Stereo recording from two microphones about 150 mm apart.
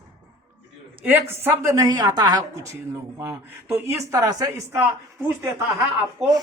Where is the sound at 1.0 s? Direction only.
15° right (ahead or behind).